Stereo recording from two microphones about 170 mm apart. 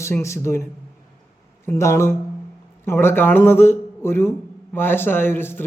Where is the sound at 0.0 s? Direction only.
15° left (ahead or behind).